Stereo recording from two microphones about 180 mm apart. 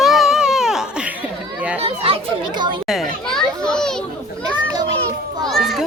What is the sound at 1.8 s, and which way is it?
A child's voice, 30° right (ahead or behind).